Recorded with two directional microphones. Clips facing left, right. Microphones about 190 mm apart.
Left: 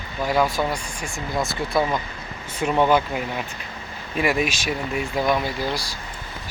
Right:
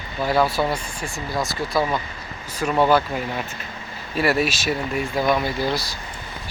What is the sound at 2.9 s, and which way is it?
Speech, 10° left (ahead or behind).